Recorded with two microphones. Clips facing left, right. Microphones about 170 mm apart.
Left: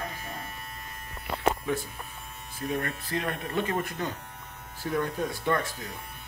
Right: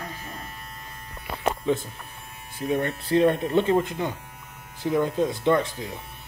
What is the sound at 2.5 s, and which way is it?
Speech, 25° right (ahead or behind).